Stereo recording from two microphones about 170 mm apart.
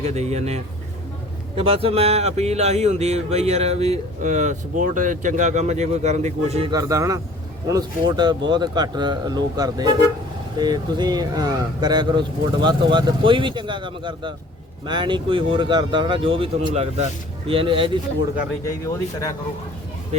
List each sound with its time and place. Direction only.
0.0 s speech: 40° right (ahead or behind)
6.7 s speech: 20° right (ahead or behind)